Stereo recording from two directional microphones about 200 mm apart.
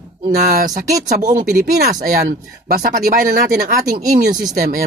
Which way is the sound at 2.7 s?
45° right (ahead or behind).